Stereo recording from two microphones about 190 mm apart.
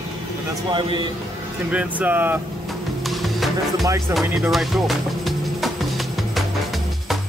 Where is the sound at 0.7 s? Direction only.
25° right (ahead or behind).